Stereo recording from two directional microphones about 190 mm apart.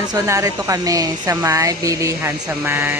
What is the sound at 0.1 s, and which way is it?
Speech, 15° right (ahead or behind).